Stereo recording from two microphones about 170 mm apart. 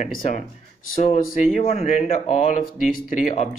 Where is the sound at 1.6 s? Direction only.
40° left (ahead or behind).